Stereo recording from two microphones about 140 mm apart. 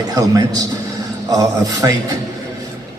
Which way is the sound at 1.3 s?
25° right (ahead or behind).